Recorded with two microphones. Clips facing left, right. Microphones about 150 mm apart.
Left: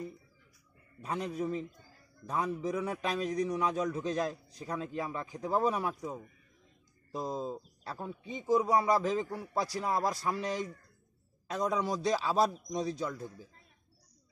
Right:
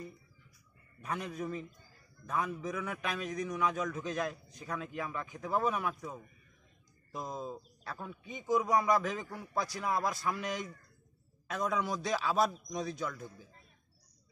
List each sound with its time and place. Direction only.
1.0 s a man's voice: 30° left (ahead or behind)
5.9 s speech: 15° left (ahead or behind)
7.1 s a man's voice: 30° left (ahead or behind)